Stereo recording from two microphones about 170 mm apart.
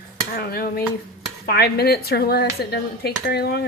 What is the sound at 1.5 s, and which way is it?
Speech, 65° left (ahead or behind).